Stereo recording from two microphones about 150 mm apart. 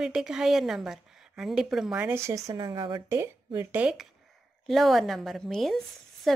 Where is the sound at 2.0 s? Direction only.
20° right (ahead or behind).